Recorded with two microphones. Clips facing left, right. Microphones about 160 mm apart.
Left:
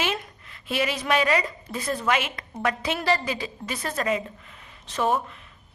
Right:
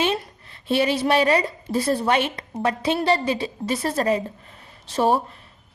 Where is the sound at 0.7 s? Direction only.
30° right (ahead or behind).